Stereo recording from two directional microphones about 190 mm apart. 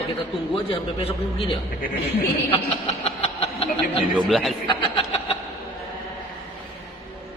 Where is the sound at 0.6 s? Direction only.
30° left (ahead or behind).